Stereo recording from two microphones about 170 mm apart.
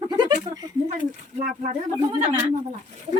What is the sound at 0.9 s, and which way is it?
Speech, 50° right (ahead or behind).